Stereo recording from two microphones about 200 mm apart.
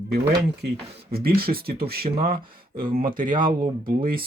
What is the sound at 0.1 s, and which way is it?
Speech, 55° right (ahead or behind).